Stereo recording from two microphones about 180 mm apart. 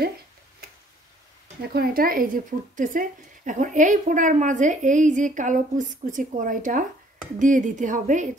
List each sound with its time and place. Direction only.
1.7 s a woman's voice: 55° right (ahead or behind)